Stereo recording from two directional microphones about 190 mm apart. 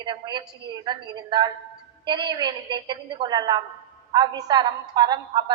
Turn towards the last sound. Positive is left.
turn(degrees=-20)  # may be behind; listen again after turning